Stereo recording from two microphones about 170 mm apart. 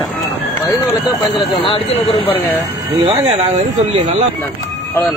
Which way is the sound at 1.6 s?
30° left (ahead or behind).